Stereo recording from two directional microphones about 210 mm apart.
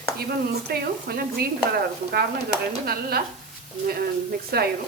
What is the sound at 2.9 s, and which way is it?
Speech, 45° right (ahead or behind).